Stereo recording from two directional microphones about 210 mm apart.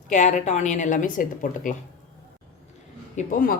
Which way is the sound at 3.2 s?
40° left (ahead or behind).